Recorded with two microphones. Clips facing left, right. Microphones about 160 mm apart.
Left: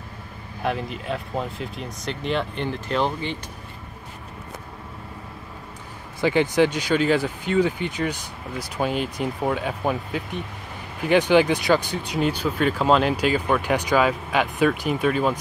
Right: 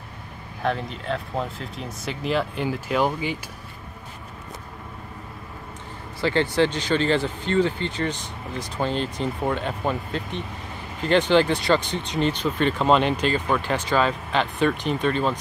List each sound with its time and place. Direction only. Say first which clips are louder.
0.7 s speech: even; 5° left (ahead or behind)
6.2 s speech: left 2 dB; 15° left (ahead or behind)